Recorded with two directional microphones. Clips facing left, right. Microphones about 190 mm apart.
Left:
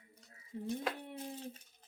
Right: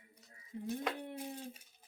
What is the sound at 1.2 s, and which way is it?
Dog, 10° right (ahead or behind).